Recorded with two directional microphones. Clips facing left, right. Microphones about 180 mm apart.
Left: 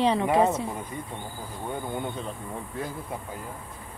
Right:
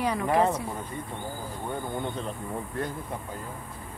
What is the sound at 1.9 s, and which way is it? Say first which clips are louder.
Speech: even; centre (ahead or behind).